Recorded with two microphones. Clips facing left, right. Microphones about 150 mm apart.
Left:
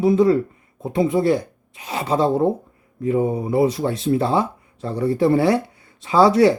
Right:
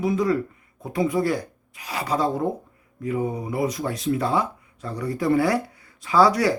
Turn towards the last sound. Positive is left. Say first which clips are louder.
# left 5 dB
turn(degrees=25)  # may be behind; listen again after turning